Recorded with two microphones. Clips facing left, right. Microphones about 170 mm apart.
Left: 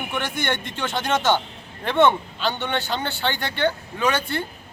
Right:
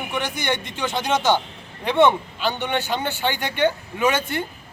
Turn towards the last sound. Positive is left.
turn(degrees=-15)  # may be behind; listen again after turning